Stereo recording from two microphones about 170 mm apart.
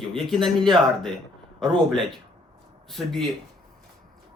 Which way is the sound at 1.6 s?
Centre (ahead or behind).